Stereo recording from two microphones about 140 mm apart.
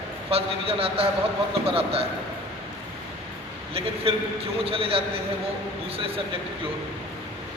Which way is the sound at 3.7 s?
45° right (ahead or behind).